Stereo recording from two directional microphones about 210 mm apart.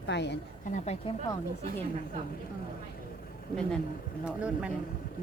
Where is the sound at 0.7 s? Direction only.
30° left (ahead or behind).